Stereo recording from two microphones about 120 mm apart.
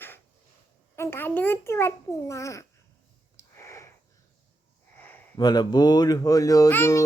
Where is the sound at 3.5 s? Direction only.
25° left (ahead or behind).